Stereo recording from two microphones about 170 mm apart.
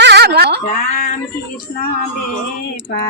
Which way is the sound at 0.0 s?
75° right (ahead or behind).